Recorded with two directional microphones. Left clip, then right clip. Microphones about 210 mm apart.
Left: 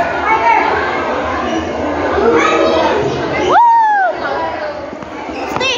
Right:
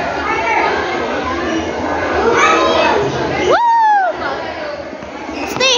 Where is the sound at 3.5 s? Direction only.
15° right (ahead or behind).